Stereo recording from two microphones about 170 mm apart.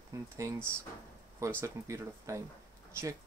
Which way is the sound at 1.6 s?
15° right (ahead or behind).